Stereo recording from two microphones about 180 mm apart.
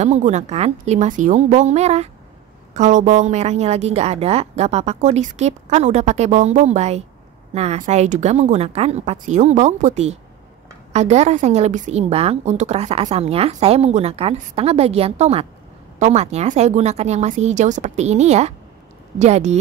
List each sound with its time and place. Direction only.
0.0 s a woman's voice: 40° right (ahead or behind)